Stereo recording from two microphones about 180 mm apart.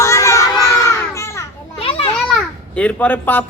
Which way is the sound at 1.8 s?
30° left (ahead or behind).